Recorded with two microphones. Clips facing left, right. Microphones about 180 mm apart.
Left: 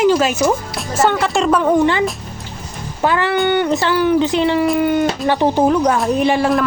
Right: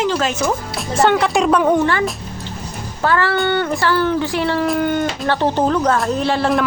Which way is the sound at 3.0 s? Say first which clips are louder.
Left 1 dB; 15° left (ahead or behind).